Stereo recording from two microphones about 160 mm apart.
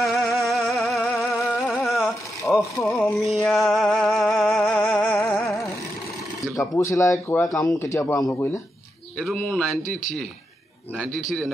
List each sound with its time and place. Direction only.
0.0 s music: centre (ahead or behind)
1.6 s a sound: centre (ahead or behind); by 5.7 s 15° left (ahead or behind)
6.5 s speech: 20° left (ahead or behind)
7.5 s speech: centre (ahead or behind)
7.8 s speech: 20° left (ahead or behind)
9.2 s speech: 5° left (ahead or behind)
11.0 s speech: centre (ahead or behind)